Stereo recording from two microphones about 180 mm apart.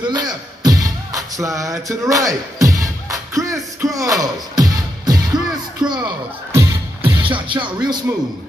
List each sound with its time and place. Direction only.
0.1 s music: 25° right (ahead or behind)
6.5 s music: 15° right (ahead or behind)
7.2 s music: 30° right (ahead or behind)